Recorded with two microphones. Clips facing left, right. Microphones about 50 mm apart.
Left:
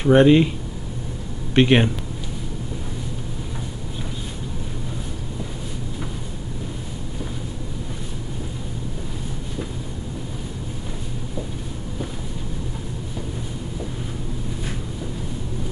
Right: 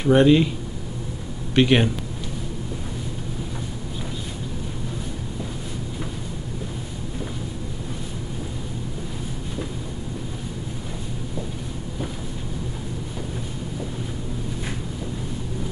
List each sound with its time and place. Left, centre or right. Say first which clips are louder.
0.0 s speech: left 2 dB; centre
1.5 s speech: left 2 dB; centre